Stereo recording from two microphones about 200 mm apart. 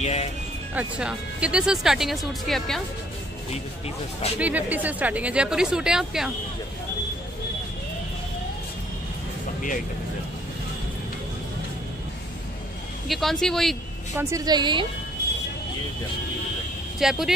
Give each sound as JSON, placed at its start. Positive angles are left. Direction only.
{"t": 0.0, "sound": "music", "side_deg": 30}
{"t": 0.7, "sound": "speech", "side_deg": -5}
{"t": 4.4, "sound": "speech", "side_deg": -5}
{"t": 13.1, "sound": "speech", "side_deg": 0}
{"t": 14.1, "sound": "a woman's voice", "side_deg": -20}
{"t": 17.0, "sound": "speech", "side_deg": 0}